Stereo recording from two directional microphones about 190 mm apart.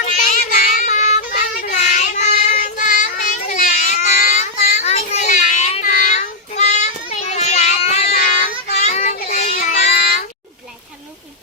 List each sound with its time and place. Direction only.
0.0 s child singing: 40° left (ahead or behind)